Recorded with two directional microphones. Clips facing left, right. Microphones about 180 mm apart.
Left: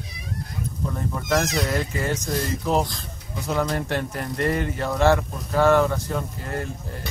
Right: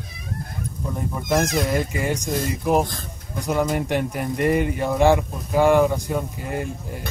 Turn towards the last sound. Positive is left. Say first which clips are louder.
# right 2 dB
turn(degrees=-15)  # may be behind; listen again after turning